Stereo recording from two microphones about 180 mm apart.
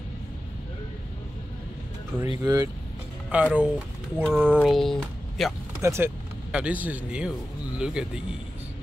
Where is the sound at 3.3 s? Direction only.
5° right (ahead or behind).